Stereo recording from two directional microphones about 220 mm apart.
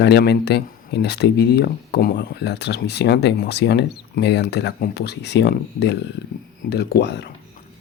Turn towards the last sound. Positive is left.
turn(degrees=50)  # may be behind; listen again after turning